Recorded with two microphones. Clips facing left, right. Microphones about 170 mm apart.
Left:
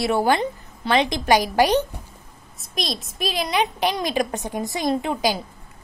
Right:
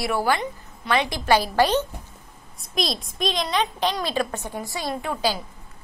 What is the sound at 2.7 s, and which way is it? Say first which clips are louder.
A woman's voice: right 2 dB; centre (ahead or behind).